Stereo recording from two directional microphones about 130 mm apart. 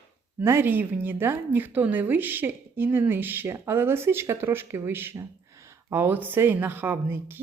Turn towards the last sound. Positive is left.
turn(degrees=-15)  # may be behind; listen again after turning